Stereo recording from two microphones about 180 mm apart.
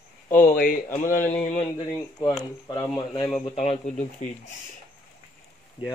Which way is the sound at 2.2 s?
20° left (ahead or behind).